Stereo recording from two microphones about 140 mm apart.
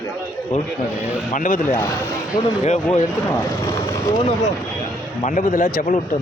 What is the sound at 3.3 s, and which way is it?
Speech, 25° left (ahead or behind).